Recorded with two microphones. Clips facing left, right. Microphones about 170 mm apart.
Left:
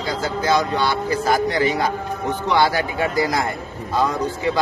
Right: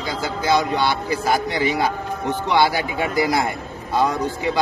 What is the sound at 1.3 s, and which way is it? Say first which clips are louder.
A man's voice: left 2 dB; 15° right (ahead or behind).